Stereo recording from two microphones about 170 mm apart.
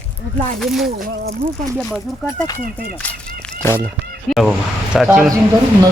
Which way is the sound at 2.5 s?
15° left (ahead or behind).